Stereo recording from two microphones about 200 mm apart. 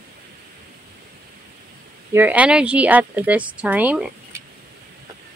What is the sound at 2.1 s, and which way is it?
Speech, 10° right (ahead or behind).